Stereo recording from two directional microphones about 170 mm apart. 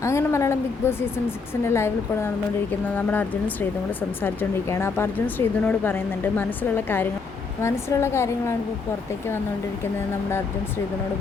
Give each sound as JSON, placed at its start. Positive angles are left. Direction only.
{"t": 0.0, "sound": "a woman's voice", "side_deg": 15}